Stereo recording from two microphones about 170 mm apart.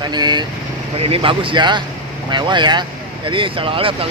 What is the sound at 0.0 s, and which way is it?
Speech, 25° right (ahead or behind).